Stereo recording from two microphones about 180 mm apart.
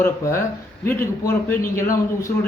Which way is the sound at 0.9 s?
10° left (ahead or behind).